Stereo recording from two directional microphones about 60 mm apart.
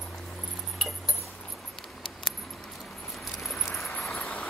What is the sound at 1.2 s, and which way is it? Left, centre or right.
Keys jangling, centre.